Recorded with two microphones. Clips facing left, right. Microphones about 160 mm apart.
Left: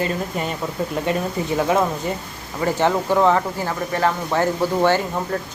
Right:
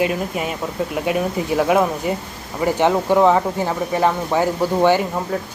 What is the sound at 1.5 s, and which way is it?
Speech, 10° right (ahead or behind).